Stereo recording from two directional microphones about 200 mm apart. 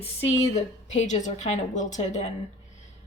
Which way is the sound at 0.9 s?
35° left (ahead or behind).